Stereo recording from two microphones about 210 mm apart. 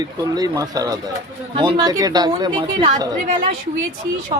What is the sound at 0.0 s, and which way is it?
Speech, 20° right (ahead or behind).